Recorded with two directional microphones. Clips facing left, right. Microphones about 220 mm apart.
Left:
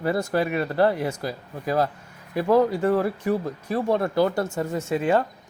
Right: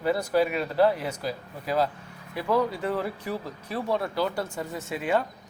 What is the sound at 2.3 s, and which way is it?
Speech, 45° left (ahead or behind).